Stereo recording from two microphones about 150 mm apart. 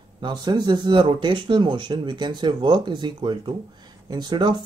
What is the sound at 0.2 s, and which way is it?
Speech, 30° right (ahead or behind).